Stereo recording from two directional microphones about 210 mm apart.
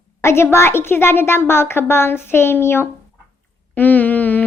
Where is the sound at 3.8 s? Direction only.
10° left (ahead or behind).